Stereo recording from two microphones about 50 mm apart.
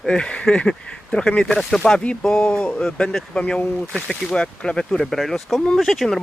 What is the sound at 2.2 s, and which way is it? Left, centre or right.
Speech, centre.